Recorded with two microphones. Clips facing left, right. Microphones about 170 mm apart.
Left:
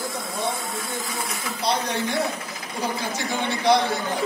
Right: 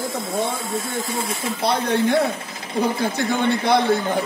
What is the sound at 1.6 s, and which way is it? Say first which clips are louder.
Speech: right 5 dB; 55° right (ahead or behind).